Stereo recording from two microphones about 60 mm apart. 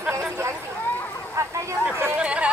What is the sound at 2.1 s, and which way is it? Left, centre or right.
Speech, centre.